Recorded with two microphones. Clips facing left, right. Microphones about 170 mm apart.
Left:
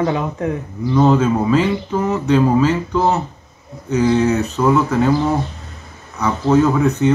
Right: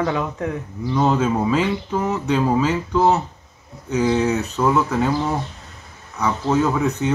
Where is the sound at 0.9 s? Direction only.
10° right (ahead or behind).